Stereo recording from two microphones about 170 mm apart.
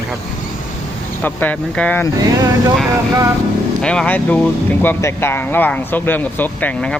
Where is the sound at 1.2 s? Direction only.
10° left (ahead or behind).